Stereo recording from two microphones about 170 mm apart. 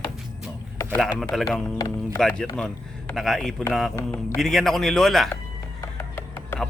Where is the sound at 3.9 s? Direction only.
15° left (ahead or behind).